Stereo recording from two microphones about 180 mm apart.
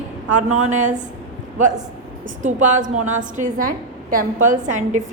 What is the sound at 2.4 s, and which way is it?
A woman's voice, 45° right (ahead or behind).